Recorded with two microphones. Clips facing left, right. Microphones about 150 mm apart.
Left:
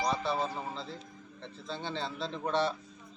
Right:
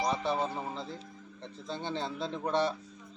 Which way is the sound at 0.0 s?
15° right (ahead or behind).